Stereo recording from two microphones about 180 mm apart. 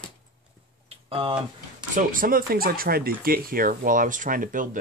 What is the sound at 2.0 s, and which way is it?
Speech, 50° right (ahead or behind).